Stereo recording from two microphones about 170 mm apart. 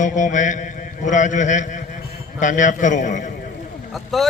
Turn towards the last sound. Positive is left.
turn(degrees=0)  # may be behind; listen again after turning